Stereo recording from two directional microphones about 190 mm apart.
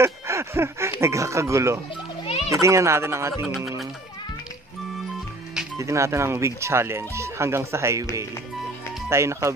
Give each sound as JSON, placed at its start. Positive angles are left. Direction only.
{"t": 0.0, "sound": "speech", "side_deg": -15}
{"t": 2.2, "sound": "children playing", "side_deg": 30}
{"t": 2.5, "sound": "speech", "side_deg": -15}
{"t": 3.4, "sound": "speech", "side_deg": 0}
{"t": 5.8, "sound": "speech", "side_deg": -15}
{"t": 9.1, "sound": "speech", "side_deg": -15}